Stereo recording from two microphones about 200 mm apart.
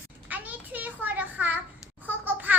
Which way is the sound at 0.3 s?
10° right (ahead or behind).